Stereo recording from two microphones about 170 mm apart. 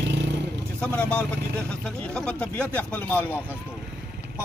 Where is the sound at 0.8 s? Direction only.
10° left (ahead or behind).